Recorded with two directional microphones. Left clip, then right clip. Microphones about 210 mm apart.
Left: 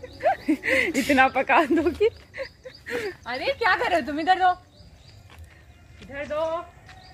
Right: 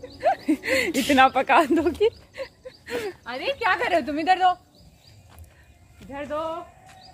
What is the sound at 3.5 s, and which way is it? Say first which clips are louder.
Speech: left 1 dB; 15° left (ahead or behind).